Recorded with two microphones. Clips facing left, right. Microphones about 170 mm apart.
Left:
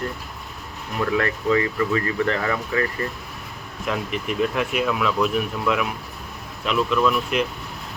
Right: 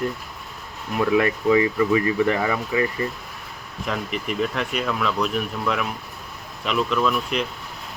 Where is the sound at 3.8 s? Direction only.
Centre (ahead or behind).